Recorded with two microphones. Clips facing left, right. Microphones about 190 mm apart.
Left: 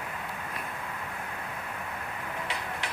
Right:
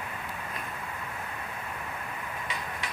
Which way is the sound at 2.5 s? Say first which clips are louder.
Left 1 dB; 70° left (ahead or behind).